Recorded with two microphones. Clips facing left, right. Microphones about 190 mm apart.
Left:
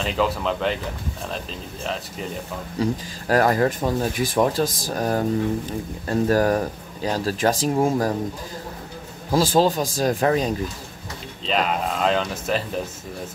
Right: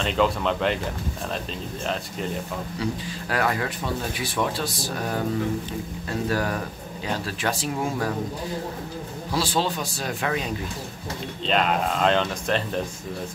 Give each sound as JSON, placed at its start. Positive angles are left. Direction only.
{"t": 0.0, "sound": "speech", "side_deg": 0}
{"t": 2.8, "sound": "speech", "side_deg": 40}
{"t": 9.3, "sound": "a man's voice", "side_deg": 45}
{"t": 11.4, "sound": "speech", "side_deg": 0}